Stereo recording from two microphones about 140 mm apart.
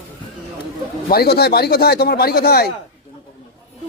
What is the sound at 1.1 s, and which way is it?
Speech, 90° left.